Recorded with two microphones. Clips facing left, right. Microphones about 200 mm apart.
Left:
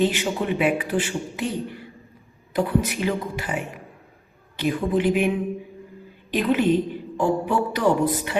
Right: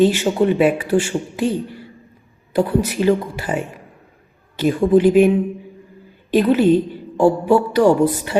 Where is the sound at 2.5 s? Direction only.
40° right (ahead or behind).